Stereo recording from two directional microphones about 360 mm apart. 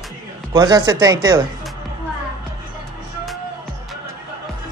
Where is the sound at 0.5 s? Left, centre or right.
Centre.